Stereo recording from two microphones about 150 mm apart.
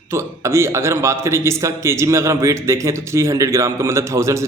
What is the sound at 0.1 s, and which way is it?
A man's voice, 15° right (ahead or behind).